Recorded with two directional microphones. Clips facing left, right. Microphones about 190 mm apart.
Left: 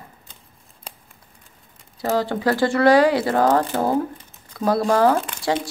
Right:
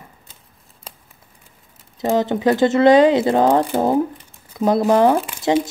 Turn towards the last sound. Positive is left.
turn(degrees=-10)  # may be behind; listen again after turning